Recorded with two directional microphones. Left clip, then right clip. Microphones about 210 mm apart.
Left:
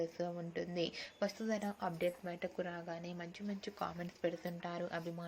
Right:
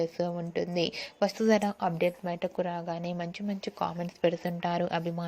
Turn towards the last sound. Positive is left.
turn(degrees=-35)  # may be behind; listen again after turning